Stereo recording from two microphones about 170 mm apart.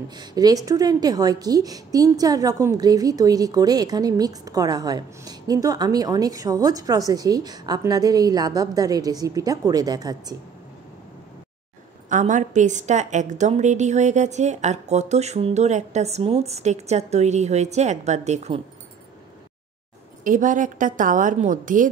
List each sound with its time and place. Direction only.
0.1 s a woman's voice: 25° right (ahead or behind)
12.1 s a woman's voice: 45° right (ahead or behind)
20.2 s a woman's voice: 50° right (ahead or behind)